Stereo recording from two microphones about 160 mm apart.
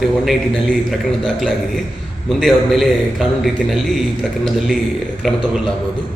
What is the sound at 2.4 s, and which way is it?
A man's voice, centre (ahead or behind).